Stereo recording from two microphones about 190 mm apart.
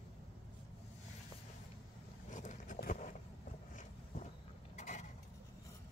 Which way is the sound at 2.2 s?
40° left (ahead or behind).